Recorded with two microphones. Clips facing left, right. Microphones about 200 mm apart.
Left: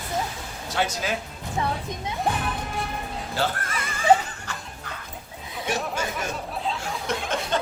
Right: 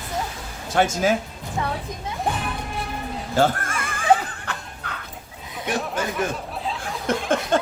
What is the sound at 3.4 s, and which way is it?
Dog, 50° right (ahead or behind).